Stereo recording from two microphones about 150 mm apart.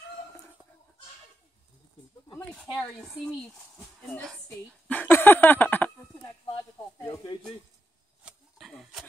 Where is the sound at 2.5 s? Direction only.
5° left (ahead or behind).